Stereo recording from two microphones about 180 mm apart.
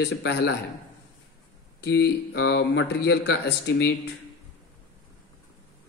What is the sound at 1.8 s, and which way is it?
Speech, 70° left (ahead or behind).